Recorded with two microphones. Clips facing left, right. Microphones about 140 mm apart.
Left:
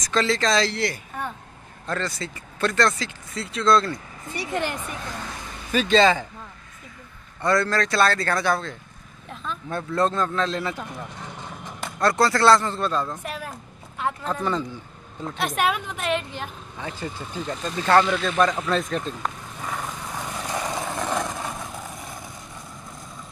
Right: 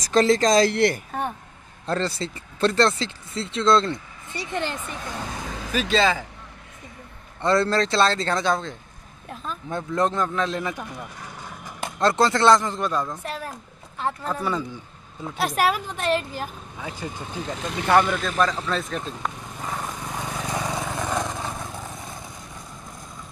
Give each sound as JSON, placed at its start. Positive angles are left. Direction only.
{"t": 0.0, "sound": "speech", "side_deg": -40}
{"t": 1.9, "sound": "speech", "side_deg": -30}
{"t": 5.7, "sound": "speech", "side_deg": 0}
{"t": 7.4, "sound": "a man's voice", "side_deg": -25}
{"t": 11.8, "sound": "a man's voice", "side_deg": -20}
{"t": 13.2, "sound": "a sound", "side_deg": 5}
{"t": 14.0, "sound": "a man's voice", "side_deg": -5}
{"t": 18.1, "sound": "speech", "side_deg": 0}
{"t": 20.5, "sound": "vehicle", "side_deg": -10}